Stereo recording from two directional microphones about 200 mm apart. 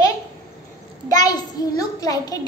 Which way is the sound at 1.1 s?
20° left (ahead or behind).